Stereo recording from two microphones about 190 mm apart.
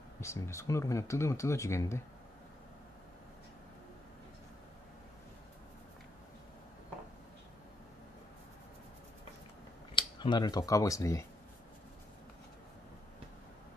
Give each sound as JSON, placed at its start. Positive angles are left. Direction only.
{"t": 0.2, "sound": "speech", "side_deg": 15}
{"t": 9.9, "sound": "speech", "side_deg": 25}